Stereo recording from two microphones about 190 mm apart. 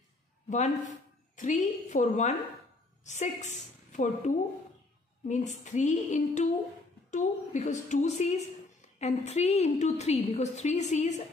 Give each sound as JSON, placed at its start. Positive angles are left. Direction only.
{"t": 0.5, "sound": "a woman's voice", "side_deg": 40}